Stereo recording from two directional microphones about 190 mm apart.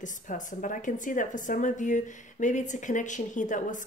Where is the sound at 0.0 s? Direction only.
45° left (ahead or behind).